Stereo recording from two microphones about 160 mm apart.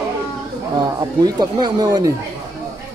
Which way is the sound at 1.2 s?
25° right (ahead or behind).